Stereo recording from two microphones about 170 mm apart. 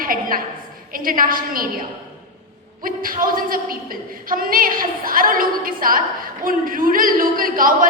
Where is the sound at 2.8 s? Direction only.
55° right (ahead or behind).